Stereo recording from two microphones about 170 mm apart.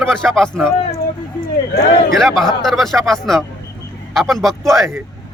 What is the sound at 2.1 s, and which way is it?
A man's voice, centre (ahead or behind).